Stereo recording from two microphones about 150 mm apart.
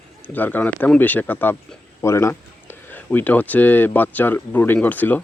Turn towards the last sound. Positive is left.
turn(degrees=10)  # may be behind; listen again after turning